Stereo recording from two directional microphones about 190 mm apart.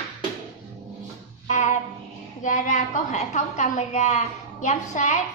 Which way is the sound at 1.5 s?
40° left (ahead or behind).